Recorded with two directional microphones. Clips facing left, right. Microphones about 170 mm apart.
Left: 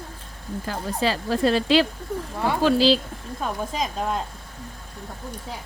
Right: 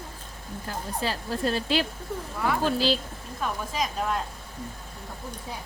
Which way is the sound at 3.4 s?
25° left (ahead or behind).